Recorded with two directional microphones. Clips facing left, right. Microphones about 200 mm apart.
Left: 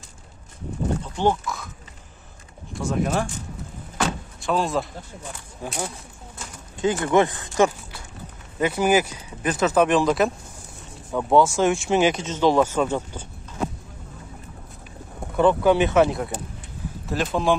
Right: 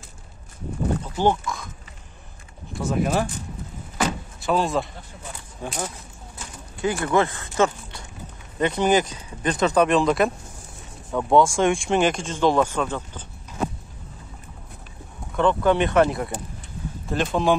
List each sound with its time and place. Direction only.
1.1 s speech: centre (ahead or behind)
2.8 s speech: 5° right (ahead or behind)
4.0 s vehicle: 5° right (ahead or behind)
5.6 s speech: centre (ahead or behind)
6.8 s speech: 20° left (ahead or behind)
15.3 s speech: 5° left (ahead or behind)